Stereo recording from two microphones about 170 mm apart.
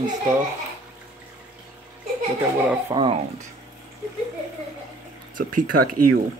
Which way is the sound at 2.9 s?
20° right (ahead or behind).